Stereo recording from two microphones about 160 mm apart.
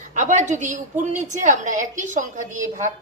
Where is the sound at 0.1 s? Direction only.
50° right (ahead or behind).